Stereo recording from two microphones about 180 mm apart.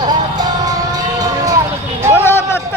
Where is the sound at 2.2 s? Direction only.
15° left (ahead or behind).